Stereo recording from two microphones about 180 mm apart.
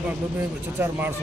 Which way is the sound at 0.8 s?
15° right (ahead or behind).